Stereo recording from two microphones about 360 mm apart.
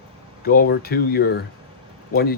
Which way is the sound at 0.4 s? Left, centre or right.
Left.